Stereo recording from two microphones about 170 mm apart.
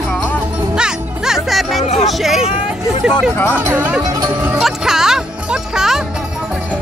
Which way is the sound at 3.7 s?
10° right (ahead or behind).